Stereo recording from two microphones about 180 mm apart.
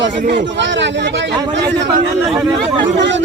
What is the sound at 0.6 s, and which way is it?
Speech, 80° right.